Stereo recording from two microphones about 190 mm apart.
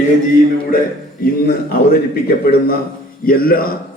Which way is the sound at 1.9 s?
50° left (ahead or behind).